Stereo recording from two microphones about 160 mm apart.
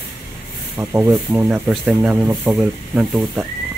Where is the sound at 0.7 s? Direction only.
10° right (ahead or behind).